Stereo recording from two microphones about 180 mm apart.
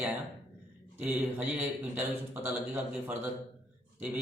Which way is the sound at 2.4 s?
10° right (ahead or behind).